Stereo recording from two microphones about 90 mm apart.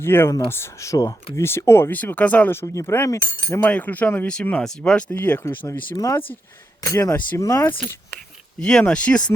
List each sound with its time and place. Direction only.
0.0 s speech: 25° left (ahead or behind)
2.5 s speech: 30° left (ahead or behind)
3.7 s speech: 20° left (ahead or behind)
6.8 s speech: 35° left (ahead or behind)
8.8 s speech: 15° left (ahead or behind)